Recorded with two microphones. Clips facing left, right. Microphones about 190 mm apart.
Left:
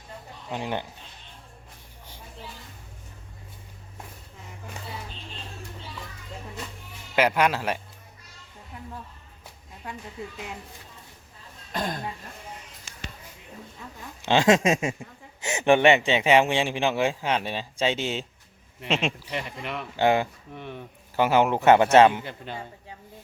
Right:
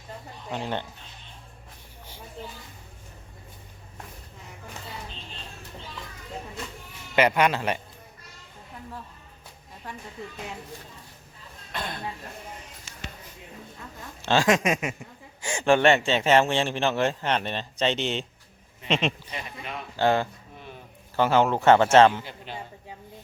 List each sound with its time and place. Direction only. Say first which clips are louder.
0.5 s a man's voice: even; 15° left (ahead or behind)
7.2 s a man's voice: right 1 dB; 5° left (ahead or behind)
11.7 s speech: left 4 dB; 40° left (ahead or behind)
14.2 s a man's voice: left 2 dB; 20° left (ahead or behind)
19.3 s speech: left 4 dB; 70° left (ahead or behind)
20.0 s a man's voice: left 1 dB; 15° left (ahead or behind)
22.2 s a man's voice: left 3 dB; 55° left (ahead or behind)